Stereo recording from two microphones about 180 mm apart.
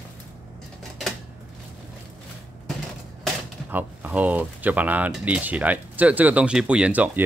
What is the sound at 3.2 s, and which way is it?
Speech, 10° right (ahead or behind).